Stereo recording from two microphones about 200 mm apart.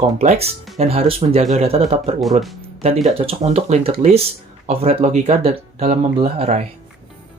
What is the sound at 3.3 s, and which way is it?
Speech, 30° right (ahead or behind).